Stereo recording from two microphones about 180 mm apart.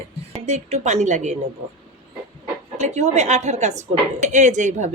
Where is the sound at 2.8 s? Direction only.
40° right (ahead or behind).